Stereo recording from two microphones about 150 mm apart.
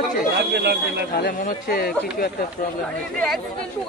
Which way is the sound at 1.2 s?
65° left (ahead or behind).